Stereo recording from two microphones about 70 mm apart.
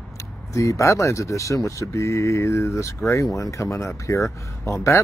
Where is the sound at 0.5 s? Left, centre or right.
Left.